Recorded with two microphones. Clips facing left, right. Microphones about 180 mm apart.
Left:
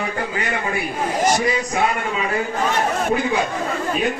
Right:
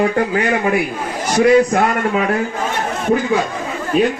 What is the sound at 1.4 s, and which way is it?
Speech, 65° right (ahead or behind).